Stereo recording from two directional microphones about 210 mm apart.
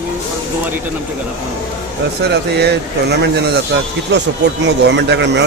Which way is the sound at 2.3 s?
50° right (ahead or behind).